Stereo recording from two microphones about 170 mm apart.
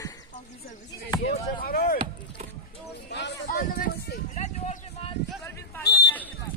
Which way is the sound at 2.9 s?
90° left.